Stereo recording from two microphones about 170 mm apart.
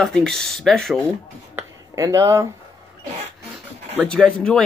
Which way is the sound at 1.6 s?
20° right (ahead or behind).